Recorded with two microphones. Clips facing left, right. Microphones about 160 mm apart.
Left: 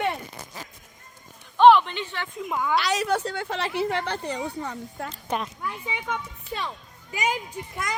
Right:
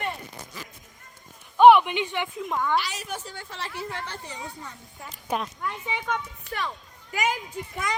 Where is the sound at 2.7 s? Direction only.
80° left.